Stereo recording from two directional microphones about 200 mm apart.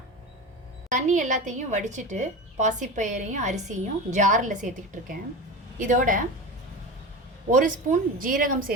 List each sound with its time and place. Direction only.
0.9 s a woman's voice: 40° right (ahead or behind)
7.5 s a woman's voice: 40° right (ahead or behind)